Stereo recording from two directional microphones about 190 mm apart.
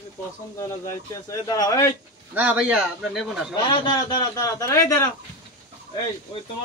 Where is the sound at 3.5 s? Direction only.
25° left (ahead or behind).